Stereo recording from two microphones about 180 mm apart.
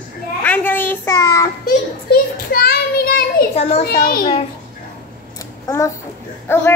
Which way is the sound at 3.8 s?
60° left (ahead or behind).